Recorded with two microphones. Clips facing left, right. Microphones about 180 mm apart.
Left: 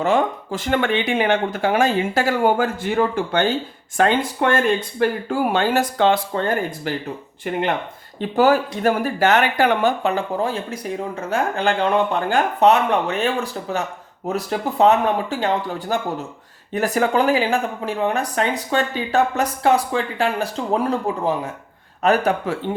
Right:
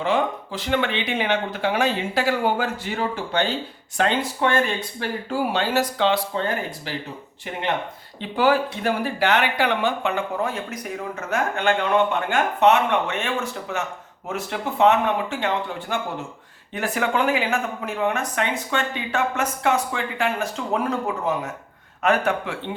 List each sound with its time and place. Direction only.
0.0 s speech: 45° left (ahead or behind)
8.2 s speech: 45° left (ahead or behind)